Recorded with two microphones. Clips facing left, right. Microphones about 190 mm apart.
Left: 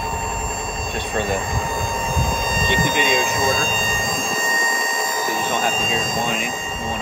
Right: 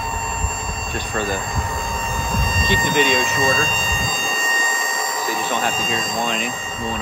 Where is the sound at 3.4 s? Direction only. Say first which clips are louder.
Even; centre (ahead or behind).